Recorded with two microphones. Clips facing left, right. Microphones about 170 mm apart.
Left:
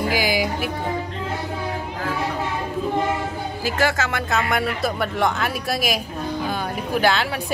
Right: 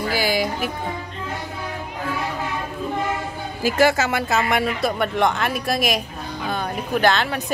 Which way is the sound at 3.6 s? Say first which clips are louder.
Right 5 dB; 10° right (ahead or behind).